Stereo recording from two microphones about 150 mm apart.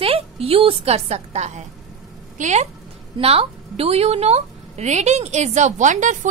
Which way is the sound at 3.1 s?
40° right (ahead or behind).